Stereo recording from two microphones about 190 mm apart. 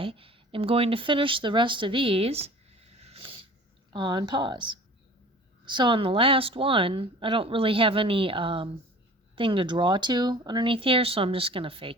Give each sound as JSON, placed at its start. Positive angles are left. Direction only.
{"t": 0.0, "sound": "speech", "side_deg": -30}